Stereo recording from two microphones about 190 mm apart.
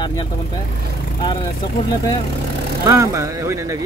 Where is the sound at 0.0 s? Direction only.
25° left (ahead or behind).